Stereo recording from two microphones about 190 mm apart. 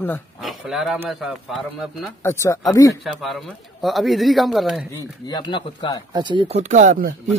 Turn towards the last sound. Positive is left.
turn(degrees=-45)  # may be behind; listen again after turning